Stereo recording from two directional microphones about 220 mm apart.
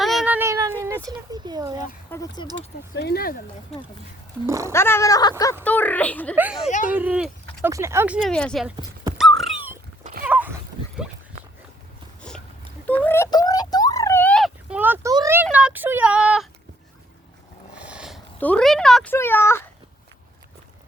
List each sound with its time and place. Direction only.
0.0 s cat: centre (ahead or behind); by 1.8 s 15° right (ahead or behind)
2.0 s speech: 15° left (ahead or behind)
2.6 s speech: 50° left (ahead or behind)
4.4 s speech: 15° right (ahead or behind)
4.7 s speech: 10° left (ahead or behind)
6.3 s speech: 5° right (ahead or behind)
6.7 s speech: 35° left (ahead or behind)
6.9 s speech: 5° right (ahead or behind)
9.1 s a sound: centre (ahead or behind)
12.3 s dog: 5° left (ahead or behind)
12.9 s a sound: 10° left (ahead or behind)
17.7 s a sound: 5° right (ahead or behind)
18.3 s speech: 5° left (ahead or behind)